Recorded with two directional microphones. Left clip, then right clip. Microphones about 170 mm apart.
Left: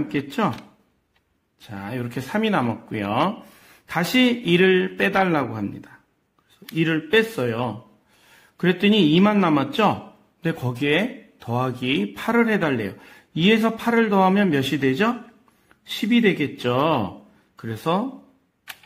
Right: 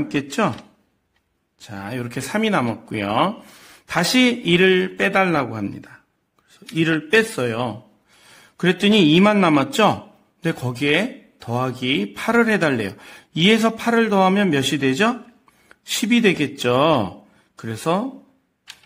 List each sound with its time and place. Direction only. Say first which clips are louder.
0.1 s speech: right 4 dB; 20° right (ahead or behind)
1.6 s a man's voice: right 2 dB; 20° right (ahead or behind)